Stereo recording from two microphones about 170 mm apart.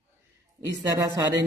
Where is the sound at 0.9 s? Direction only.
20° right (ahead or behind).